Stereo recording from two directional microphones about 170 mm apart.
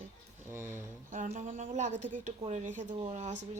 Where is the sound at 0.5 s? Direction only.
15° right (ahead or behind).